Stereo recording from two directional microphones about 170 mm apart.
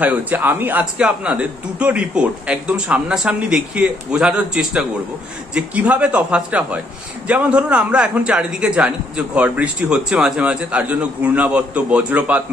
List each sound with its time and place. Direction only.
0.0 s a man's voice: 10° right (ahead or behind)